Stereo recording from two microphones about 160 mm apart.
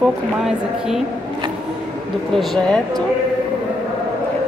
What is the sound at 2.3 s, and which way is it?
Speech, centre (ahead or behind).